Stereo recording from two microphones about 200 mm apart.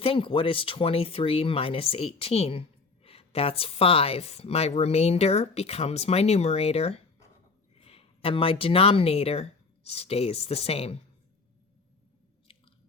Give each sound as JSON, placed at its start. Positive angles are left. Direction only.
{"t": 0.0, "sound": "speech", "side_deg": 25}